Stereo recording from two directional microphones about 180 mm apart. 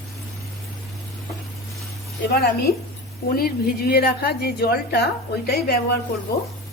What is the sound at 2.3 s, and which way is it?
A woman's voice, 60° left (ahead or behind).